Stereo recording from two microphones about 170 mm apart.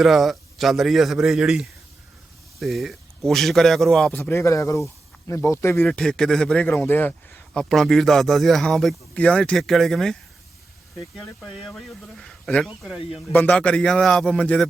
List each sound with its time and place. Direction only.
0.0 s speech: centre (ahead or behind)
4.2 s a man's voice: 15° left (ahead or behind)
11.5 s speech: 5° left (ahead or behind)
13.3 s a man's voice: 10° left (ahead or behind)